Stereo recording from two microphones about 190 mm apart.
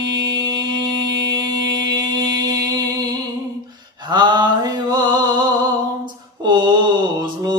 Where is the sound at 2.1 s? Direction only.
20° right (ahead or behind).